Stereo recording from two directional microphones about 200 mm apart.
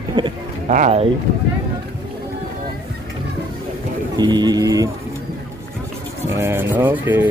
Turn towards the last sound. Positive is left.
turn(degrees=-10)  # may be behind; listen again after turning